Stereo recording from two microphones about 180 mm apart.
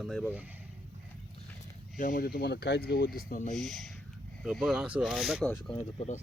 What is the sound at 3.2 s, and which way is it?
Speech, 45° left (ahead or behind).